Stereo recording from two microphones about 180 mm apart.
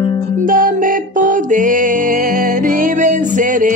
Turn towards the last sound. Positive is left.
turn(degrees=-50)  # may be behind; listen again after turning